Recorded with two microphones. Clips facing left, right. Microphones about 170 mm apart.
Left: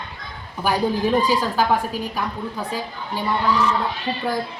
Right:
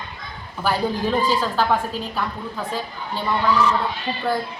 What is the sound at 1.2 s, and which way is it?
A woman's voice, 10° left (ahead or behind).